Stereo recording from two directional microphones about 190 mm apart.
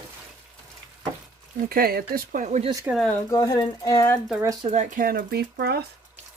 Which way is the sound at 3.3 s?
20° left (ahead or behind).